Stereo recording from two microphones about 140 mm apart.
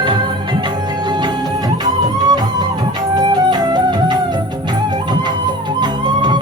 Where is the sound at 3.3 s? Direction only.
30° right (ahead or behind).